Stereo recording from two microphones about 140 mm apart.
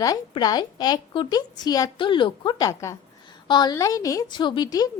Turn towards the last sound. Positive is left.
turn(degrees=30)  # may be behind; listen again after turning